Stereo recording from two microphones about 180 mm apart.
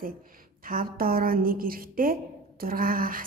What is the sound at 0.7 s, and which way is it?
A woman's voice, 55° right (ahead or behind).